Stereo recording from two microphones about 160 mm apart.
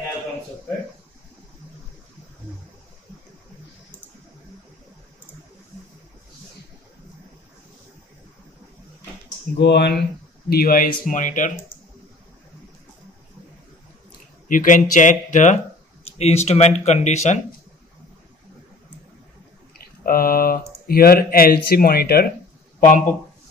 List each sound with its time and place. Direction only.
9.6 s speech: 90° left
10.5 s speech: 70° left (ahead or behind)
11.1 s speech: 55° left (ahead or behind)
14.5 s speech: 55° left (ahead or behind)
20.0 s speech: 65° left (ahead or behind)
22.8 s speech: 55° left (ahead or behind)